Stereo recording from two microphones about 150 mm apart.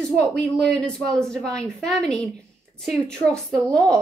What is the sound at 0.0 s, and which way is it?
Speech, 5° left (ahead or behind).